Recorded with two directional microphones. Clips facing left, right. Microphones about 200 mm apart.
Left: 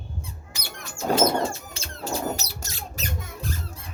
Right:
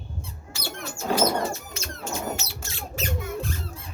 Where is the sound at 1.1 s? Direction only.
25° left (ahead or behind).